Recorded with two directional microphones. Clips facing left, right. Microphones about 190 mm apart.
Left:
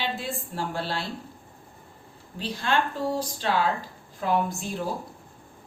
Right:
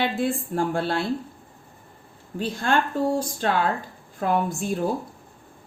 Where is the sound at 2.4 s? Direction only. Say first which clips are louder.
Right 3 dB; 50° right (ahead or behind).